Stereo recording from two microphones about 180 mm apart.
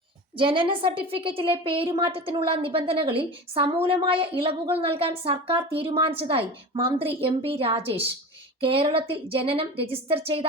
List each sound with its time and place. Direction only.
0.3 s a woman's voice: 30° right (ahead or behind)